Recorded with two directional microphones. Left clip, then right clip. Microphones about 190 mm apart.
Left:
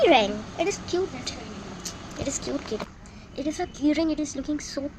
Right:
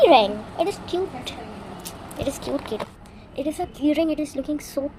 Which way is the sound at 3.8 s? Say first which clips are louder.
Right 3 dB; 10° left (ahead or behind).